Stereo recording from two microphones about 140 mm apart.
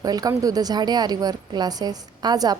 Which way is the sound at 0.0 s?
25° right (ahead or behind).